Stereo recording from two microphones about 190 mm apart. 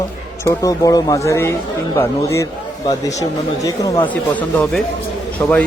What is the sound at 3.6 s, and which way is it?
Speech, 20° left (ahead or behind).